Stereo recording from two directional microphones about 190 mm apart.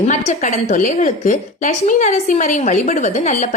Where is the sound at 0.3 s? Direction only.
40° left (ahead or behind).